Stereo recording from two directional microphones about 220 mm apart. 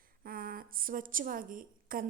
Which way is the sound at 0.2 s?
40° right (ahead or behind).